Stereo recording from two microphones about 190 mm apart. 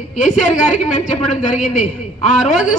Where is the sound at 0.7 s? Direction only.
40° left (ahead or behind).